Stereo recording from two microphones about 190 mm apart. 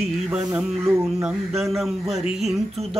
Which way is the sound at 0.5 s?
15° right (ahead or behind).